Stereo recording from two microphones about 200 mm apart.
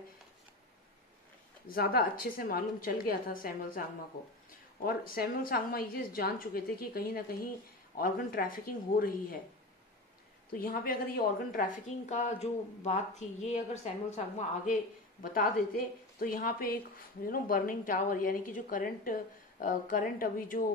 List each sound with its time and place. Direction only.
1.7 s a woman's voice: 50° left (ahead or behind)
10.6 s a woman's voice: 45° left (ahead or behind)
15.3 s a woman's voice: 45° left (ahead or behind)